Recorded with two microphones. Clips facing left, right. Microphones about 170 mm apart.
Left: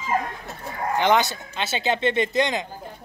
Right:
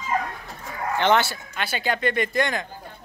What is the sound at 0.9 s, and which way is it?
Speech, 15° left (ahead or behind).